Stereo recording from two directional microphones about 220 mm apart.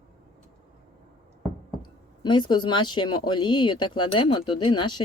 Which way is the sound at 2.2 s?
20° left (ahead or behind).